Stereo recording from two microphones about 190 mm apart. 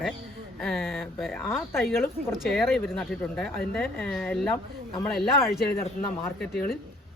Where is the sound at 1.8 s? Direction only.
10° left (ahead or behind).